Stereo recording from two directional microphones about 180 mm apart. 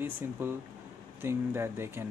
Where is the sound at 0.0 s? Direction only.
10° right (ahead or behind).